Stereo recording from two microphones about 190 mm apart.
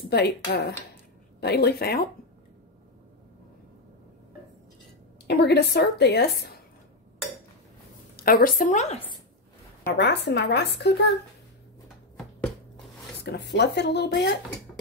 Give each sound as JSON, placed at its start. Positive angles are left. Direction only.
{"t": 0.1, "sound": "a woman's voice", "side_deg": 60}
{"t": 5.2, "sound": "a woman's voice", "side_deg": 60}
{"t": 8.2, "sound": "speech", "side_deg": 50}
{"t": 9.9, "sound": "a woman's voice", "side_deg": 65}
{"t": 13.2, "sound": "a woman's voice", "side_deg": 60}